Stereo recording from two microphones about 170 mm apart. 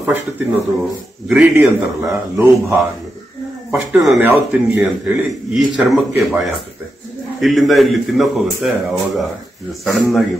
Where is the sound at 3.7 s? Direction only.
Centre (ahead or behind).